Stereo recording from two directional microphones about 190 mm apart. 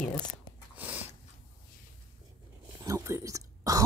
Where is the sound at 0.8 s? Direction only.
10° right (ahead or behind).